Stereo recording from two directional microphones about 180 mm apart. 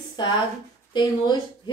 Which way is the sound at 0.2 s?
25° left (ahead or behind).